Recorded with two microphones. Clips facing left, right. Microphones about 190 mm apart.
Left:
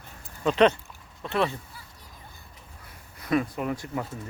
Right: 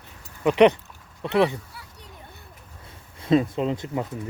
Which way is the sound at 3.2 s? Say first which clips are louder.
Right 5 dB; 25° right (ahead or behind).